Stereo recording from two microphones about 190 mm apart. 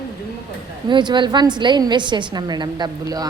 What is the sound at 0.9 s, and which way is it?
A woman's voice, 25° right (ahead or behind).